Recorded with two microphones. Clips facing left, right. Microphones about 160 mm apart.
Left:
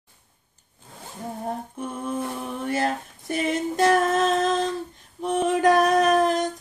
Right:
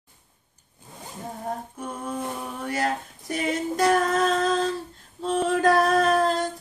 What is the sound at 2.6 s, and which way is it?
Female singing, 25° left (ahead or behind).